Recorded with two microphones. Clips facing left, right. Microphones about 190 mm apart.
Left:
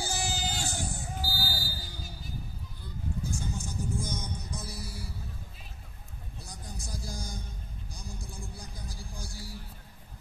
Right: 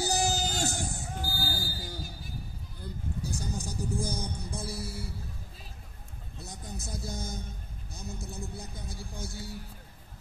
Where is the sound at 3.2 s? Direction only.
35° right (ahead or behind).